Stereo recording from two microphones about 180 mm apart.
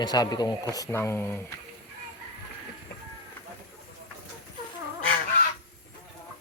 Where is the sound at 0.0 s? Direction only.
20° left (ahead or behind).